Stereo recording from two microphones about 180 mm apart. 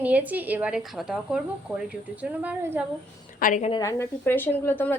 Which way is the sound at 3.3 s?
45° left (ahead or behind).